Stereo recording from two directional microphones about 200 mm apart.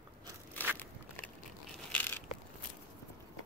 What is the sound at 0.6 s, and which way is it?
Crackle, 10° left (ahead or behind).